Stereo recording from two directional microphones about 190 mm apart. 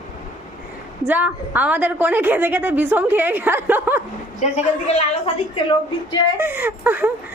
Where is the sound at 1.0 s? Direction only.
10° right (ahead or behind).